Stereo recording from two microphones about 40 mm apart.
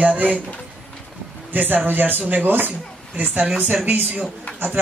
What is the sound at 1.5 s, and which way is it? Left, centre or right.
A man's voice, right.